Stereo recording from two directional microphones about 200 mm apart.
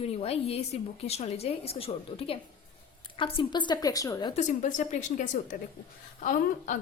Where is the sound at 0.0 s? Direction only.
30° left (ahead or behind).